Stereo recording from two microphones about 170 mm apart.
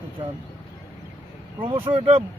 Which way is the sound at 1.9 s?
35° right (ahead or behind).